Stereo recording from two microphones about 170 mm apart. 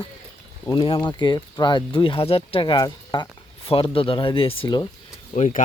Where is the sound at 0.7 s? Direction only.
30° left (ahead or behind).